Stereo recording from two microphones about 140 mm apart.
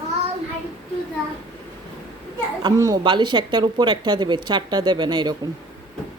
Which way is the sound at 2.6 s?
30° right (ahead or behind).